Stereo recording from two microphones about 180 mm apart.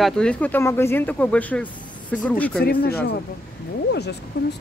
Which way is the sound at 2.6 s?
60° left (ahead or behind).